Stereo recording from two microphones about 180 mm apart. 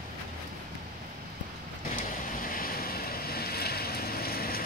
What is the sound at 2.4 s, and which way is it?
Boat, 55° left (ahead or behind).